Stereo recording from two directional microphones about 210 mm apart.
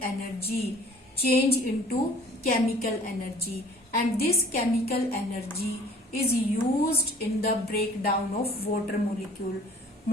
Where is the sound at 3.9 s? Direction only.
45° left (ahead or behind).